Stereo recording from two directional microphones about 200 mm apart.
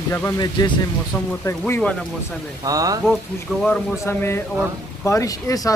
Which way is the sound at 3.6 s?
5° left (ahead or behind).